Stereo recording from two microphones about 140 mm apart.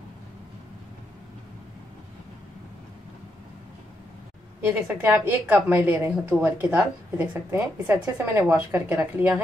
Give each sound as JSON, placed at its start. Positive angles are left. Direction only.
{"t": 4.6, "sound": "a woman's voice", "side_deg": -15}